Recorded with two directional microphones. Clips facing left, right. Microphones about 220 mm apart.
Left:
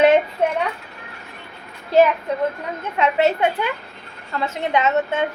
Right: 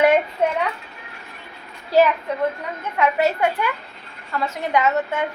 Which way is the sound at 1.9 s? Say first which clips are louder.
Left 1 dB; 20° left (ahead or behind).